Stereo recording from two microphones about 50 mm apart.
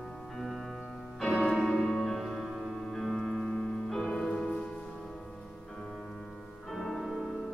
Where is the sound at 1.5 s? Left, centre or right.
Centre.